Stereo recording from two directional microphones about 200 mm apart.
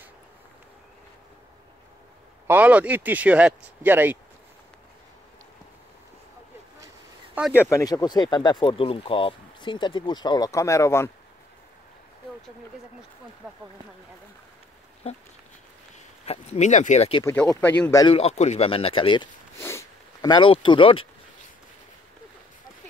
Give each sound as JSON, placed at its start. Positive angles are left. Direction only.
{"t": 2.4, "sound": "speech", "side_deg": -10}
{"t": 7.5, "sound": "speech", "side_deg": 15}
{"t": 13.4, "sound": "speech", "side_deg": -5}
{"t": 16.3, "sound": "speech", "side_deg": 35}
{"t": 17.2, "sound": "speech", "side_deg": 15}
{"t": 17.9, "sound": "speech", "side_deg": 25}
{"t": 19.6, "sound": "speech", "side_deg": 15}